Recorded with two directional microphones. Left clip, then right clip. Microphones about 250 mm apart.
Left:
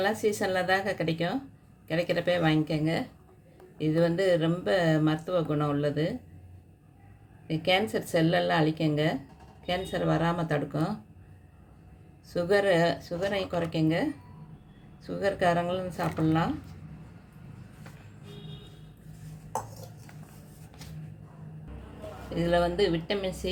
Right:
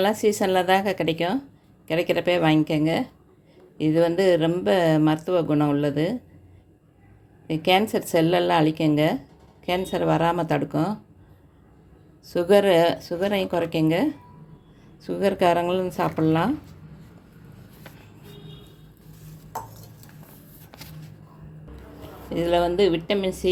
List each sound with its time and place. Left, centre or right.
0.0 s speech: right
7.4 s speech: right
12.3 s speech: right
22.4 s speech: right